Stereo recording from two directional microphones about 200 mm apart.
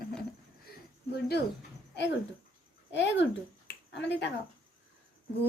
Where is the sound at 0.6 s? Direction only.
55° left (ahead or behind).